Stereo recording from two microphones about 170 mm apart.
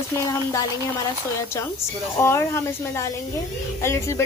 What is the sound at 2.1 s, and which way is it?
A woman's voice, 15° left (ahead or behind).